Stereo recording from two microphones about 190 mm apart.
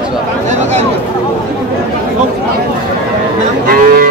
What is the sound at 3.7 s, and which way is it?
Cattle, 50° right (ahead or behind).